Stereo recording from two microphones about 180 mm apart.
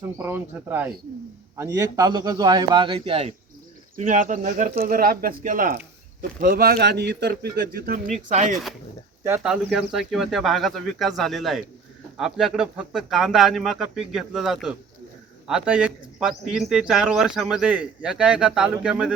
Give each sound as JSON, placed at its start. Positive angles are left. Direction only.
{"t": 0.2, "sound": "a man's voice", "side_deg": -10}
{"t": 3.9, "sound": "speech", "side_deg": -45}
{"t": 9.4, "sound": "speech", "side_deg": -5}